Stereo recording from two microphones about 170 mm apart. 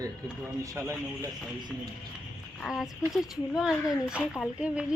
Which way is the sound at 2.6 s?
Centre (ahead or behind).